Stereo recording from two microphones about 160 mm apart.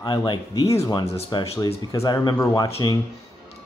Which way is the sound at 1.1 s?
40° left (ahead or behind).